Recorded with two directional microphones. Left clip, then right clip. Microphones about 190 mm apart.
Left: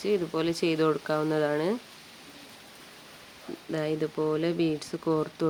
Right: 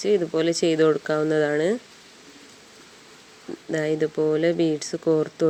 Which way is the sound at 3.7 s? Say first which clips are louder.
Right 6 dB; 15° right (ahead or behind).